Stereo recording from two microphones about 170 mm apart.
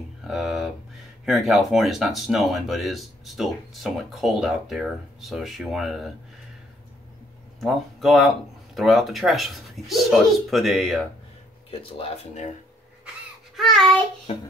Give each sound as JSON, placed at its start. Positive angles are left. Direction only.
{"t": 0.2, "sound": "a sound", "side_deg": 0}
{"t": 1.2, "sound": "speech", "side_deg": 0}
{"t": 7.6, "sound": "speech", "side_deg": 0}
{"t": 11.7, "sound": "speech", "side_deg": 35}
{"t": 13.6, "sound": "speech", "side_deg": 0}
{"t": 14.3, "sound": "speech", "side_deg": 35}